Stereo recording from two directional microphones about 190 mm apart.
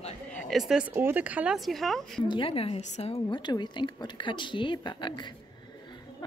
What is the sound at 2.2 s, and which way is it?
A woman's voice, 25° left (ahead or behind).